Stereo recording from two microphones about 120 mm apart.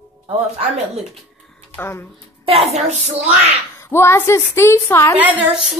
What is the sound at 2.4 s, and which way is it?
A child's voice, 55° right (ahead or behind).